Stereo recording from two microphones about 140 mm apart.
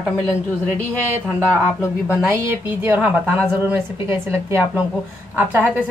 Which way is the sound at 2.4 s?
15° right (ahead or behind).